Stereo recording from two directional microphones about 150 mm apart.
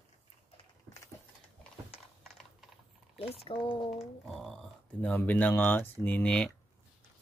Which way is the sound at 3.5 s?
35° left (ahead or behind).